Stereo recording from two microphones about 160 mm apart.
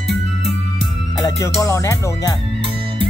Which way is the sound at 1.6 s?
15° left (ahead or behind).